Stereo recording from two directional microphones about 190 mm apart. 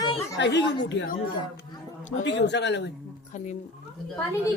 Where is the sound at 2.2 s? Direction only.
65° left (ahead or behind).